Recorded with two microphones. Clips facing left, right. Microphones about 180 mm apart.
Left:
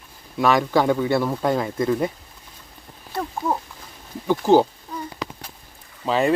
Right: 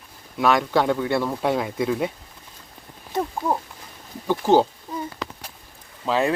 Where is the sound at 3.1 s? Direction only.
20° right (ahead or behind).